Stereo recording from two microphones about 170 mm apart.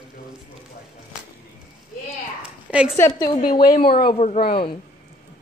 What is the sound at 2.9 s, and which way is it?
Speech, 15° left (ahead or behind).